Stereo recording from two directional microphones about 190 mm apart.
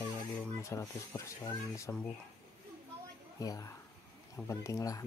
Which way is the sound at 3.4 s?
20° left (ahead or behind).